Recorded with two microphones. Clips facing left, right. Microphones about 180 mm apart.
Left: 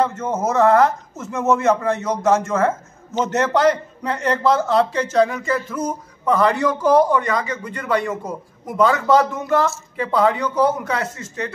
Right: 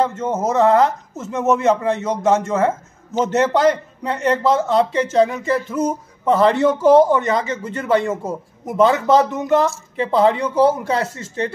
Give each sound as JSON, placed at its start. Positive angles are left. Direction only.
{"t": 0.0, "sound": "speech", "side_deg": -20}
{"t": 4.0, "sound": "speech", "side_deg": -25}